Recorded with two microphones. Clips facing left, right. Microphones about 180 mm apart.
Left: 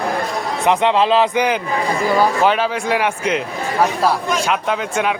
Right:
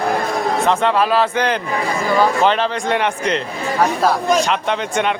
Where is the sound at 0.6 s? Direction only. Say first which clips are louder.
Left 4 dB; 20° left (ahead or behind).